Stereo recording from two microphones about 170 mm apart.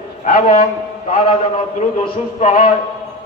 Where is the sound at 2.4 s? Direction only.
45° left (ahead or behind).